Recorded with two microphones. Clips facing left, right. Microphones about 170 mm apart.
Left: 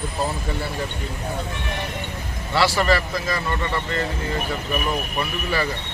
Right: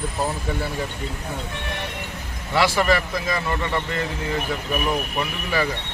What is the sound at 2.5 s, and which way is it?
Speech, 15° right (ahead or behind).